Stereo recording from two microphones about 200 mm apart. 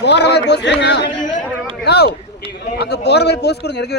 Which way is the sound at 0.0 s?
60° left (ahead or behind).